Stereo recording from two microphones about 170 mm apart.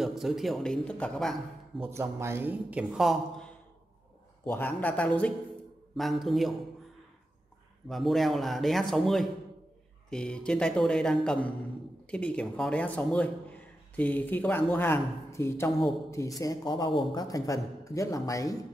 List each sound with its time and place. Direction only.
0.0 s speech: centre (ahead or behind)
1.8 s speech: 15° right (ahead or behind); by 6.5 s centre (ahead or behind)
7.9 s a man's voice: centre (ahead or behind); by 18.6 s 20° left (ahead or behind)